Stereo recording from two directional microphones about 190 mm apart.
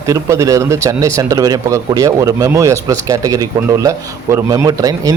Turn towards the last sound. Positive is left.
turn(degrees=-20)  # may be behind; listen again after turning